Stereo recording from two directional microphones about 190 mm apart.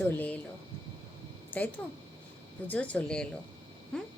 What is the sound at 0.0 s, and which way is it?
Speech, 10° left (ahead or behind).